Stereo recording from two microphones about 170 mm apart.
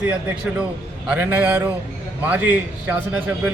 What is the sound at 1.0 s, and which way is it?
Speech, 10° right (ahead or behind).